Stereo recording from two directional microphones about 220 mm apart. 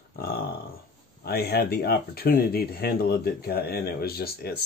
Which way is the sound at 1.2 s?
45° left (ahead or behind).